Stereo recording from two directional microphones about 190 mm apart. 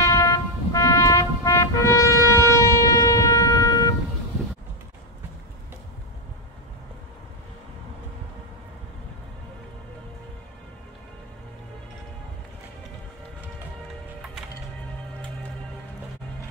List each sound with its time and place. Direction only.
0.0 s vehicle: 20° left (ahead or behind)